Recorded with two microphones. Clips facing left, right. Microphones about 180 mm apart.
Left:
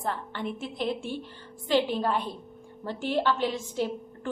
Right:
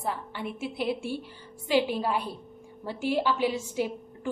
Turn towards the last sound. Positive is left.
turn(degrees=-10)  # may be behind; listen again after turning